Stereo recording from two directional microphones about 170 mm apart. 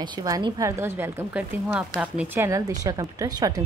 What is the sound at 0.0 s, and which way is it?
A woman's voice, 25° right (ahead or behind).